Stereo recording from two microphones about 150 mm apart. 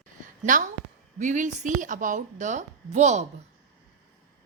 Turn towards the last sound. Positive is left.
turn(degrees=-50)  # may be behind; listen again after turning